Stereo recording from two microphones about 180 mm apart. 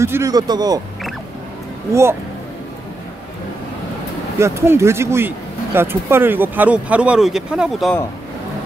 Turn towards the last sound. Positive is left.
turn(degrees=0)  # may be behind; listen again after turning